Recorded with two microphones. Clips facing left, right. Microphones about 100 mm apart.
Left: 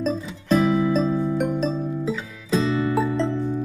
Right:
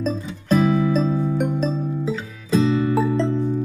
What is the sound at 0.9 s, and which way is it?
Music, centre (ahead or behind).